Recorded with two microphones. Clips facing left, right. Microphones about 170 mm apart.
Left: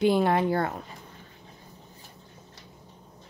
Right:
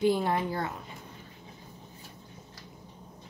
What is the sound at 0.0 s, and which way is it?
Speech, 75° left (ahead or behind).